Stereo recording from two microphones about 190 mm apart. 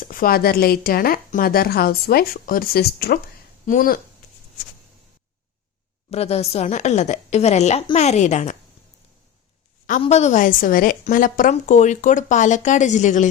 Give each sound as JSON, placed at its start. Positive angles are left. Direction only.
{"t": 0.0, "sound": "a woman's voice", "side_deg": 50}
{"t": 6.1, "sound": "a woman's voice", "side_deg": 35}
{"t": 10.0, "sound": "a woman's voice", "side_deg": 35}